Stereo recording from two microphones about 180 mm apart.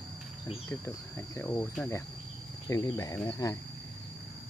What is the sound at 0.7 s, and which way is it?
Speech, 15° left (ahead or behind).